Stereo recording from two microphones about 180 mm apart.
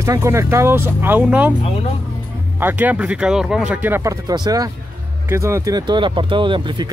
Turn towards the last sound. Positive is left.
turn(degrees=-25)  # may be behind; listen again after turning